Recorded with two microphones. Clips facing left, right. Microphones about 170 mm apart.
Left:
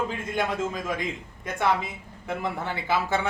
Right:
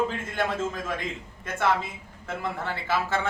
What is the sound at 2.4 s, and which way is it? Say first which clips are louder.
Speech: even; 15° left (ahead or behind).